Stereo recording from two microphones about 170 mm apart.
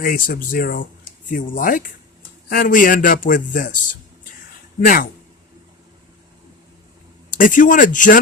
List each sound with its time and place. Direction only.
0.0 s a man's voice: 55° left (ahead or behind)
7.3 s a man's voice: 50° left (ahead or behind)